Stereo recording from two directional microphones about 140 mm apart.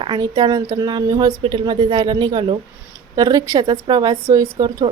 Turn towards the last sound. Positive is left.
turn(degrees=-30)  # may be behind; listen again after turning